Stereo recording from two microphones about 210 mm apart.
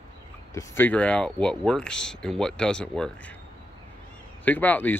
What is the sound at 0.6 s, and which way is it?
Speech, 10° left (ahead or behind).